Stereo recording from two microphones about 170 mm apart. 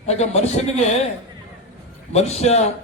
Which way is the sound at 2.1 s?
40° left (ahead or behind).